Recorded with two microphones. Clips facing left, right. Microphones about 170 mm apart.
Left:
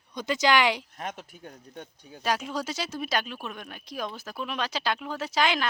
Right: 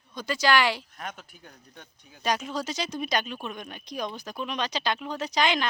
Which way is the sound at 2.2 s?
5° left (ahead or behind).